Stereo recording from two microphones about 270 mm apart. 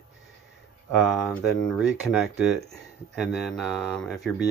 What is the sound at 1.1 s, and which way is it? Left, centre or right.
Speech, centre.